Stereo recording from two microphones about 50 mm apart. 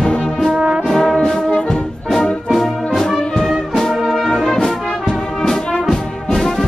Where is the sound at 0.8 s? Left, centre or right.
Centre.